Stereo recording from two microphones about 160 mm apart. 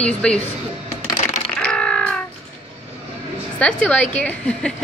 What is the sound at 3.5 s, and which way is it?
Speech, 10° left (ahead or behind).